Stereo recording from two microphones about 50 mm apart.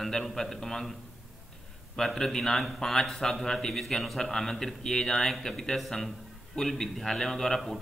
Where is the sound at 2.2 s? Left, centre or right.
Centre.